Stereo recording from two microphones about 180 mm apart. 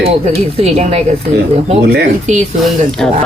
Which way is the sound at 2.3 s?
40° right (ahead or behind).